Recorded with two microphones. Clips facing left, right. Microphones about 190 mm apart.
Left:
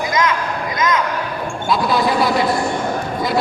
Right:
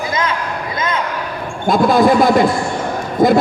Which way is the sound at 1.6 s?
50° right (ahead or behind).